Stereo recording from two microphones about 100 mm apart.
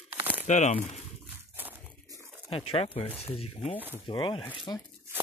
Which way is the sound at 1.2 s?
15° right (ahead or behind).